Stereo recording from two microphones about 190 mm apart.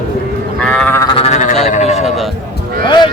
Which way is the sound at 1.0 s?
30° left (ahead or behind).